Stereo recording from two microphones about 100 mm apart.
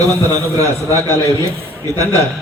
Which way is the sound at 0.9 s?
25° left (ahead or behind).